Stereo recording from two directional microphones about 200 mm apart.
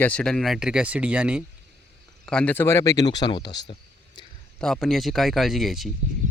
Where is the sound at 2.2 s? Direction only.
5° left (ahead or behind); by 4.3 s 20° left (ahead or behind).